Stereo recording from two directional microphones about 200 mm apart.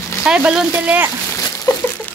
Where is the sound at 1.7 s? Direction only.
15° left (ahead or behind).